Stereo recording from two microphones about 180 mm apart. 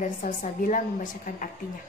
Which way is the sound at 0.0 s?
50° left (ahead or behind).